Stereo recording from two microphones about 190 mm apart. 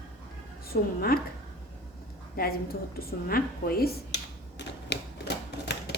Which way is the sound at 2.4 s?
50° left (ahead or behind).